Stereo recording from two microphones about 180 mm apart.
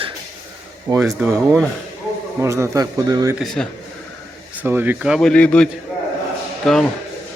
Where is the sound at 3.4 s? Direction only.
Centre (ahead or behind).